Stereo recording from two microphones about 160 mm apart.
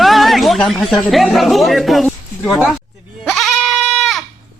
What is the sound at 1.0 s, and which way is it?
Speech, centre (ahead or behind).